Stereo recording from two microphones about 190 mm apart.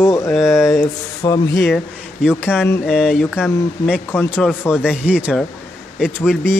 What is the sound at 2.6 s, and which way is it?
Speech, 10° left (ahead or behind).